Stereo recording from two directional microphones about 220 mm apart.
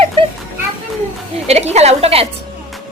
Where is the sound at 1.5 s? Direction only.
30° right (ahead or behind).